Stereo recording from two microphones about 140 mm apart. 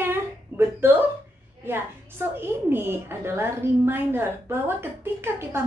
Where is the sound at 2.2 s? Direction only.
15° right (ahead or behind).